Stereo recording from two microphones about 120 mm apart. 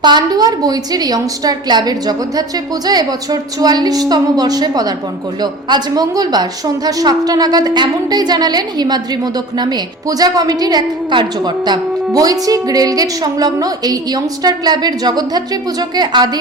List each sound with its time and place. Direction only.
0.0 s a woman's voice: 40° right (ahead or behind)